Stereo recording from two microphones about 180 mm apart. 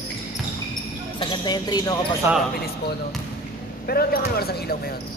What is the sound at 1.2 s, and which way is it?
Speech, 25° left (ahead or behind).